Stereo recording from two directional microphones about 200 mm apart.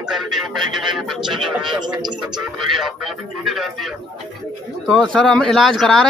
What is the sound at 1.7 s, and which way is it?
Speech, 20° right (ahead or behind).